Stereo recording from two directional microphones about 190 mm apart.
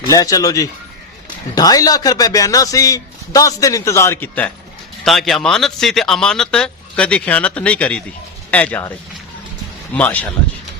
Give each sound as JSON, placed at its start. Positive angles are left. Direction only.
{"t": 0.0, "sound": "a man's voice", "side_deg": 20}
{"t": 9.9, "sound": "a man's voice", "side_deg": 10}